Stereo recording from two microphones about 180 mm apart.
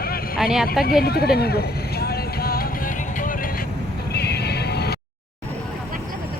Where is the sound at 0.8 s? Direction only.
60° left (ahead or behind).